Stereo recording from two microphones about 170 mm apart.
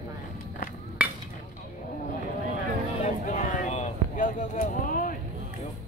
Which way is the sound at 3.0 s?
45° left (ahead or behind).